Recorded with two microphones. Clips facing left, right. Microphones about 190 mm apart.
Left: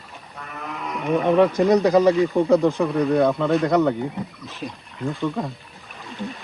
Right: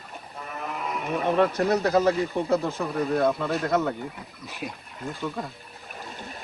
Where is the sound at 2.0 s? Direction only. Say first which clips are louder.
Left 6 dB; centre (ahead or behind).